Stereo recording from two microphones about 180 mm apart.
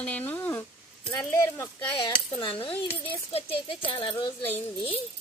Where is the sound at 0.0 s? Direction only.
10° left (ahead or behind).